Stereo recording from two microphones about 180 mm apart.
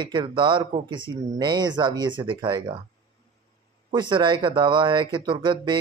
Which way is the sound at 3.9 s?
25° right (ahead or behind).